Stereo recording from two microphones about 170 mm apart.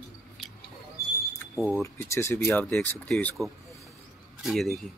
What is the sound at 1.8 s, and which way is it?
Speech, 15° left (ahead or behind).